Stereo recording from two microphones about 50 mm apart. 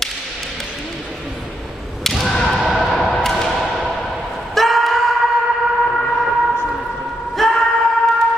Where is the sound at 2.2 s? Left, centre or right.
Centre.